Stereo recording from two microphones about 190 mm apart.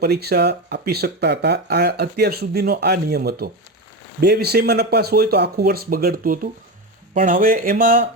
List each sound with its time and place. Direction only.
0.0 s speech: 55° right (ahead or behind)